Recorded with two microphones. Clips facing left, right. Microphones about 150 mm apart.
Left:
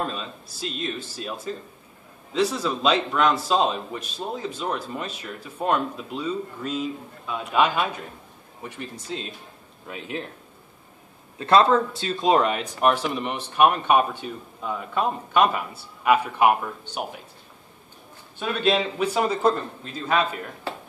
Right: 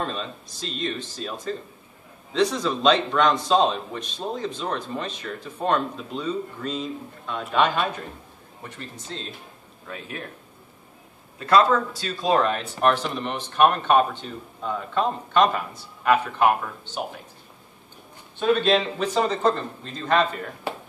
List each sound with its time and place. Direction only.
0.0 s speech: 5° left (ahead or behind)
11.3 s speech: 25° left (ahead or behind); by 17.0 s 10° left (ahead or behind)
18.4 s speech: 5° left (ahead or behind)